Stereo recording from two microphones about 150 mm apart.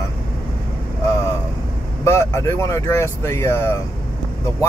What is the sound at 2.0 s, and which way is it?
Speech, 20° left (ahead or behind).